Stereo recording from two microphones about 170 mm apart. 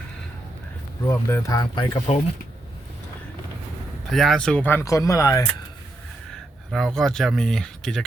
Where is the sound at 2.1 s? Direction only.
35° left (ahead or behind).